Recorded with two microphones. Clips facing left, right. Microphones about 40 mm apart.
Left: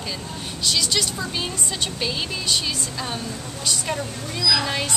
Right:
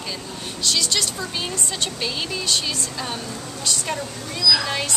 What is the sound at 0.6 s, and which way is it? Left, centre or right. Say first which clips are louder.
Speech: even; centre.